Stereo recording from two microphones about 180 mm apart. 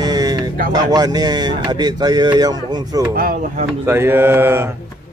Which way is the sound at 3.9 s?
10° right (ahead or behind).